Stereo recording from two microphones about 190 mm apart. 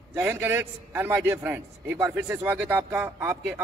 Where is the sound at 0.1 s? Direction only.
10° right (ahead or behind).